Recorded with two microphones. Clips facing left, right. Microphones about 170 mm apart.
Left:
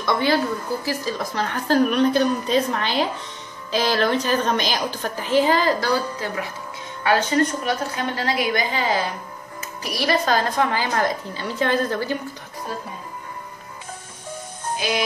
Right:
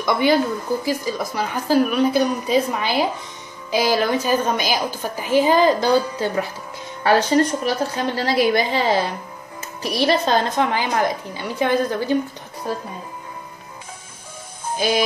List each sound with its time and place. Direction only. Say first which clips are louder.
0.0 s a woman's voice: right 3 dB; 15° right (ahead or behind)